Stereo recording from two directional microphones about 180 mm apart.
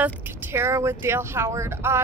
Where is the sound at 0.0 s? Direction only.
15° right (ahead or behind).